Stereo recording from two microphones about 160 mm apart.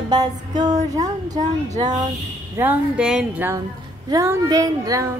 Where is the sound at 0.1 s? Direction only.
25° right (ahead or behind).